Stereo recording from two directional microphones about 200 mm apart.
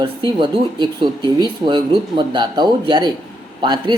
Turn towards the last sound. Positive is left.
turn(degrees=-20)  # may be behind; listen again after turning